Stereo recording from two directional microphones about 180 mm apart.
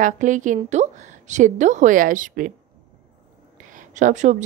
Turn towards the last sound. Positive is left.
turn(degrees=-40)  # may be behind; listen again after turning